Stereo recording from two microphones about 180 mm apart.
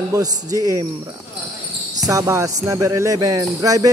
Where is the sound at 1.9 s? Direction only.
20° right (ahead or behind).